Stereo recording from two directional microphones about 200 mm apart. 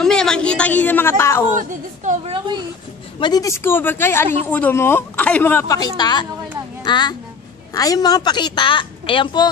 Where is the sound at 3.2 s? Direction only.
20° left (ahead or behind).